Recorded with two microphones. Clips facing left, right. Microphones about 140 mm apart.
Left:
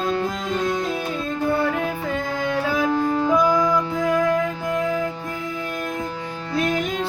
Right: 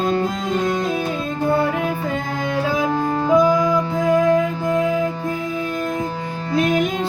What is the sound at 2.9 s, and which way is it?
Music, 25° right (ahead or behind).